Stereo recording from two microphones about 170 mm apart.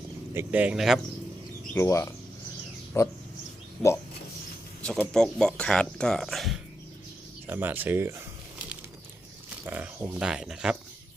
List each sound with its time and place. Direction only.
0.3 s speech: 10° right (ahead or behind)
1.7 s speech: 15° left (ahead or behind)
3.8 s speech: centre (ahead or behind)
7.4 s a sound: 10° right (ahead or behind)
9.6 s speech: 10° right (ahead or behind)